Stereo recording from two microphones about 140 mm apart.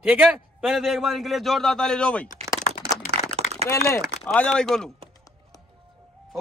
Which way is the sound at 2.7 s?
75° left (ahead or behind).